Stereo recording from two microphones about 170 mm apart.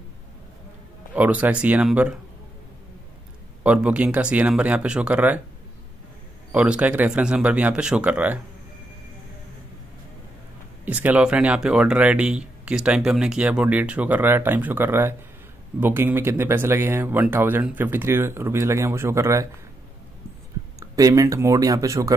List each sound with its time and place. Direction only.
1.1 s speech: 10° right (ahead or behind)
3.6 s speech: 5° right (ahead or behind)
6.5 s speech: 5° right (ahead or behind)
10.9 s speech: 10° right (ahead or behind)
20.9 s speech: 20° right (ahead or behind)